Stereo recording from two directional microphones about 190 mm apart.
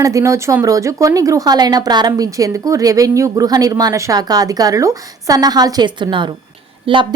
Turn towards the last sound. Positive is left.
turn(degrees=-25)  # may be behind; listen again after turning